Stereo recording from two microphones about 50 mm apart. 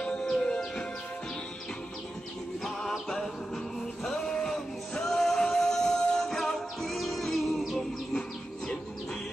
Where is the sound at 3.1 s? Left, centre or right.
Centre.